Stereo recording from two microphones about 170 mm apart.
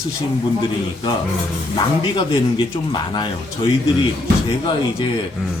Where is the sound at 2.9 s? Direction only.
25° left (ahead or behind).